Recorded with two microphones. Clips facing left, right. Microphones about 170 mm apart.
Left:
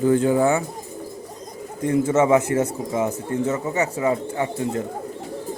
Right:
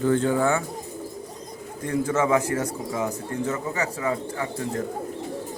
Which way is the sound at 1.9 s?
25° left (ahead or behind).